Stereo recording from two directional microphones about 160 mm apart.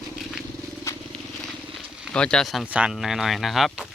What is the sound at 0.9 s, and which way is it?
Vehicle, 15° left (ahead or behind).